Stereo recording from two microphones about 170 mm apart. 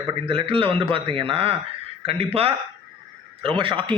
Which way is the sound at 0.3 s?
30° right (ahead or behind).